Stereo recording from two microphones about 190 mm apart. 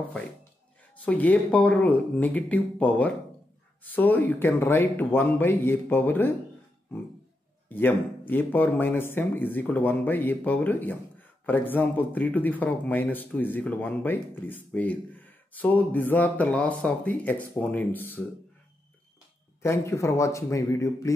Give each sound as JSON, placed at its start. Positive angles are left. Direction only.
{"t": 1.0, "sound": "a man's voice", "side_deg": 10}
{"t": 7.7, "sound": "a man's voice", "side_deg": 10}
{"t": 19.6, "sound": "a man's voice", "side_deg": 15}